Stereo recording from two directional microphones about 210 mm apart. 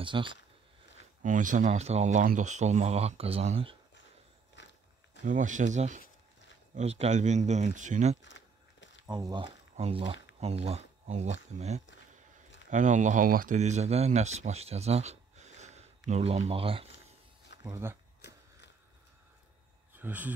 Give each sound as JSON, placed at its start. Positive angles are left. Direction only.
{"t": 0.0, "sound": "speech", "side_deg": -25}
{"t": 1.2, "sound": "speech", "side_deg": -40}
{"t": 4.6, "sound": "walk", "side_deg": 60}
{"t": 5.2, "sound": "speech", "side_deg": -40}
{"t": 9.0, "sound": "speech", "side_deg": -20}
{"t": 17.6, "sound": "speech", "side_deg": -10}
{"t": 18.2, "sound": "mechanisms", "side_deg": 55}
{"t": 19.9, "sound": "speech", "side_deg": -10}